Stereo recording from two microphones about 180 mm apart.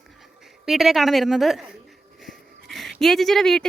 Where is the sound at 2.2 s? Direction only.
Centre (ahead or behind).